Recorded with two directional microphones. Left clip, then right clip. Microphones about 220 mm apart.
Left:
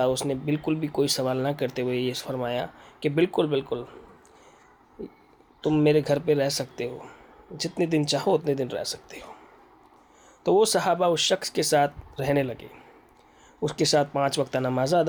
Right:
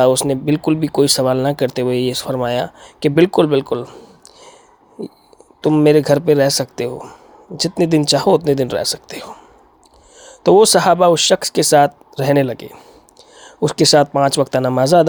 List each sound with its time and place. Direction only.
0.0 s speech: 40° right (ahead or behind)